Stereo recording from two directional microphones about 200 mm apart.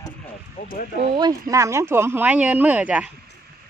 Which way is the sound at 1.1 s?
20° right (ahead or behind).